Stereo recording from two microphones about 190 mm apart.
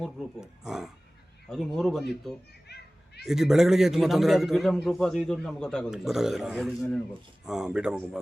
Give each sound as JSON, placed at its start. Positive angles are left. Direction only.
{"t": 0.0, "sound": "a man's voice", "side_deg": 0}
{"t": 2.6, "sound": "children playing", "side_deg": 60}
{"t": 3.2, "sound": "a man's voice", "side_deg": 0}